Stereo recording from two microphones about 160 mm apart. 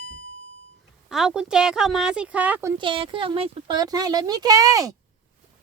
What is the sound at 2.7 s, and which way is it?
Speech, 30° right (ahead or behind).